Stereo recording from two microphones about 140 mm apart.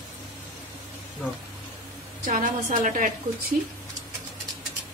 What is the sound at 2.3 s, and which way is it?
Speech, 70° right (ahead or behind).